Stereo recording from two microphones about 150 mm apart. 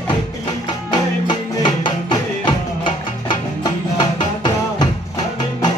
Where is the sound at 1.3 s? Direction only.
30° left (ahead or behind).